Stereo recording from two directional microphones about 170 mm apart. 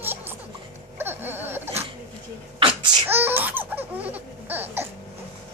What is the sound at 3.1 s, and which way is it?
Laughter, 10° right (ahead or behind).